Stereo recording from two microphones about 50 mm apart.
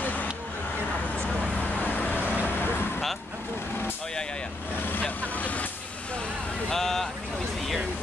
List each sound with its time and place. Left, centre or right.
0.0 s vehicle: left
1.6 s vehicle: left
5.2 s vehicle: left
6.7 s vehicle: centre